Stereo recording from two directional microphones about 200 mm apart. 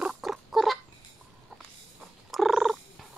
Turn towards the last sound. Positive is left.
turn(degrees=0)  # may be behind; listen again after turning